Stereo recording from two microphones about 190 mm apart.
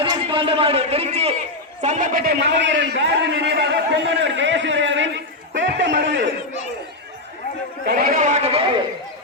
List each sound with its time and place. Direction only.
0.0 s a man's voice: 25° right (ahead or behind); by 6.3 s 70° right (ahead or behind)
7.9 s a man's voice: 55° right (ahead or behind); by 8.8 s 30° right (ahead or behind)